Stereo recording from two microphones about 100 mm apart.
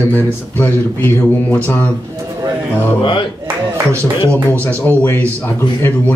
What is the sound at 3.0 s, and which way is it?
Speech, 55° left (ahead or behind).